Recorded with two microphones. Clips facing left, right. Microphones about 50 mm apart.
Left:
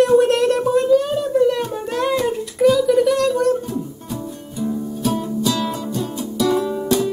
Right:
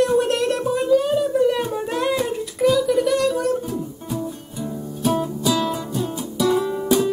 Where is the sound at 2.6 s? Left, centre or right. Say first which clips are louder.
Left 3 dB; centre.